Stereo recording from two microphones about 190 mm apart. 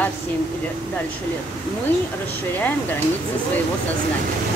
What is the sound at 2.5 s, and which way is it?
Speech, 10° left (ahead or behind).